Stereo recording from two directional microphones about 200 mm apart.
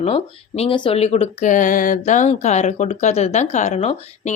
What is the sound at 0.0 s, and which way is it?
Speech, 30° left (ahead or behind).